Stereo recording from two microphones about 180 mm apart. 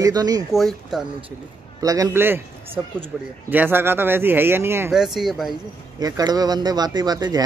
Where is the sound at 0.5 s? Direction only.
Centre (ahead or behind).